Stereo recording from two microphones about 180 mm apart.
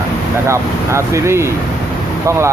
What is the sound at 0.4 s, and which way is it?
Speech, 15° right (ahead or behind).